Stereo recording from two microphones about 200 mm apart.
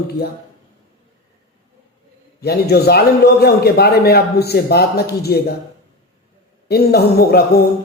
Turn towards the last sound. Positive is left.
turn(degrees=50)  # may be behind; listen again after turning